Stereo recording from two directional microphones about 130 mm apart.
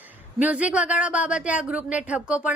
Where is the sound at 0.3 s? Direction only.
10° right (ahead or behind).